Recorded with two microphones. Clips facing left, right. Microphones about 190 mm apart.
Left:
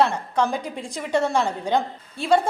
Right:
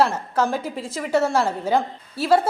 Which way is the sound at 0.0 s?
5° right (ahead or behind).